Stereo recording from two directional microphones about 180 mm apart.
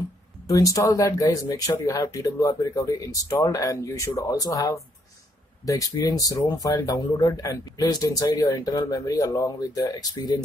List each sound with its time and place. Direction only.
0.5 s speech: 20° left (ahead or behind)